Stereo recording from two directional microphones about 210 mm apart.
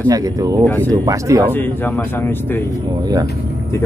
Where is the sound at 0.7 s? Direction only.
10° left (ahead or behind).